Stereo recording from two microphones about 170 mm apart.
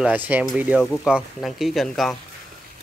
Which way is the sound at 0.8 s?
5° left (ahead or behind).